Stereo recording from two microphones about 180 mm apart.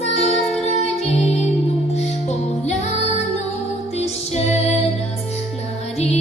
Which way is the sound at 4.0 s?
35° left (ahead or behind).